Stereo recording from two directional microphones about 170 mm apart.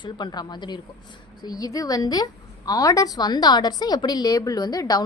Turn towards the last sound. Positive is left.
turn(degrees=20)  # may be behind; listen again after turning